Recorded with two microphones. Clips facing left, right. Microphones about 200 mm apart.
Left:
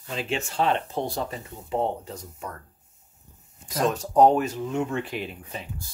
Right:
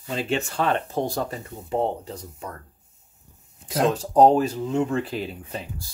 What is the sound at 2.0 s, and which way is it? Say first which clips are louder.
Speech: right 1 dB; 30° right (ahead or behind).